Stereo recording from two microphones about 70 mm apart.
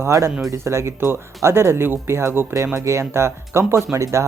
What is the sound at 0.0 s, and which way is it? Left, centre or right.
Speech, right.